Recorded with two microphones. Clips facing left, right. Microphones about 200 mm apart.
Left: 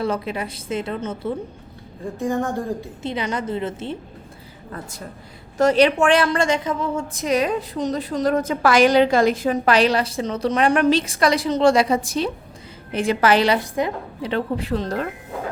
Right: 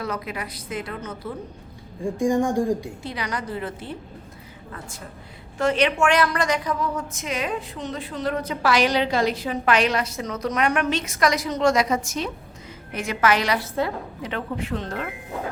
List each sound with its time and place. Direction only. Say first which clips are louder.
0.0 s a woman's voice: left 6 dB; 30° left (ahead or behind)
2.1 s speech: right 2 dB; 15° right (ahead or behind)
3.0 s a woman's voice: left 5 dB; 25° left (ahead or behind)
4.7 s a woman's voice: left 5 dB; 40° left (ahead or behind)